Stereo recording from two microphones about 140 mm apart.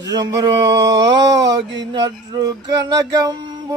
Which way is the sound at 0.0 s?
25° right (ahead or behind).